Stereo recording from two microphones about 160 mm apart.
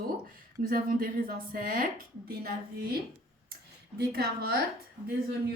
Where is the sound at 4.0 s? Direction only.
70° right (ahead or behind).